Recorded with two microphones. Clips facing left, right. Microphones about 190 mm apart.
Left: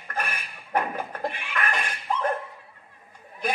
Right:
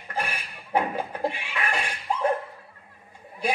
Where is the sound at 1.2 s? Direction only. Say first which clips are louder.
Left 1 dB; 10° right (ahead or behind).